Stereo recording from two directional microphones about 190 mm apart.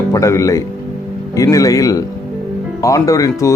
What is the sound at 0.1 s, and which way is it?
Speech, 15° left (ahead or behind).